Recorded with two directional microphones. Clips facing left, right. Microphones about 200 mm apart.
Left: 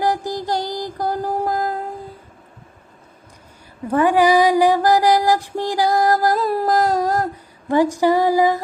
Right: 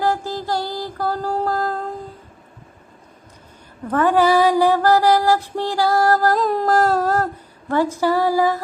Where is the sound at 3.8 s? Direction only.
10° left (ahead or behind).